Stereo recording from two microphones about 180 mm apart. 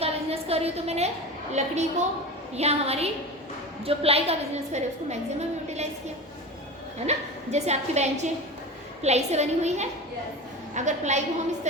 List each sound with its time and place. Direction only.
0.0 s a sound: 35° right (ahead or behind)
1.5 s a woman's voice: 40° right (ahead or behind)
7.0 s a woman's voice: 35° right (ahead or behind)